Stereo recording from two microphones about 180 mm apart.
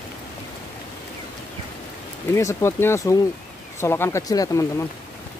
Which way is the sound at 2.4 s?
15° left (ahead or behind).